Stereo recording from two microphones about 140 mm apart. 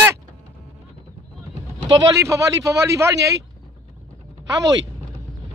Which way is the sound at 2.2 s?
25° right (ahead or behind).